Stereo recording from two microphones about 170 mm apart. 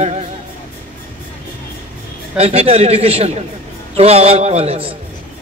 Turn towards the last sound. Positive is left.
turn(degrees=-35)  # may be behind; listen again after turning